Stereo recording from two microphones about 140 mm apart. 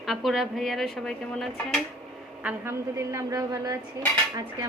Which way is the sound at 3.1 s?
20° right (ahead or behind).